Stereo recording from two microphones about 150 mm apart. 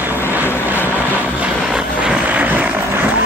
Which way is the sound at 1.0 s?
10° right (ahead or behind).